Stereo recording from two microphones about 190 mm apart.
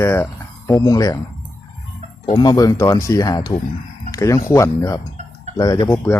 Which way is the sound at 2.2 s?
25° left (ahead or behind).